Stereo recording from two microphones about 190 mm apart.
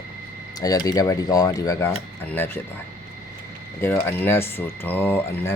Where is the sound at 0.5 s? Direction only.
20° left (ahead or behind).